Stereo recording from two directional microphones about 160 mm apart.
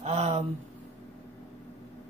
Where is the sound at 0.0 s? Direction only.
45° right (ahead or behind).